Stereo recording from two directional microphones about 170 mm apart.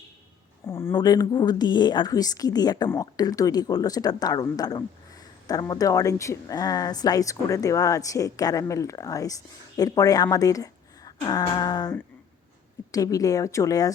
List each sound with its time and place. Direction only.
0.7 s speech: 15° left (ahead or behind)